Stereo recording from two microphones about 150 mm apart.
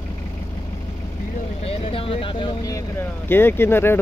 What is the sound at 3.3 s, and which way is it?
Speech, 15° left (ahead or behind).